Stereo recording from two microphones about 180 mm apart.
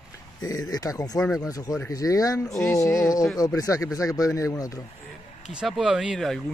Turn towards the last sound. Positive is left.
turn(degrees=0)  # may be behind; listen again after turning